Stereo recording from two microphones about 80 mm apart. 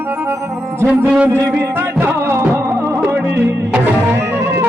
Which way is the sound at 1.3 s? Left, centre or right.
Right.